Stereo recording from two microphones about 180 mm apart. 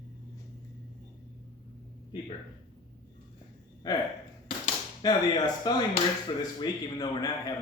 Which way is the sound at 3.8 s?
20° left (ahead or behind).